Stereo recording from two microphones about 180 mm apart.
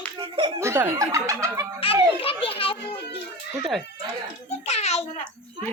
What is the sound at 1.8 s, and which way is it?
Speech, 30° left (ahead or behind).